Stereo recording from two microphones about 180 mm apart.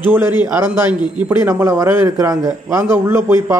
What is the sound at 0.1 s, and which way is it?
A man's voice, 10° right (ahead or behind).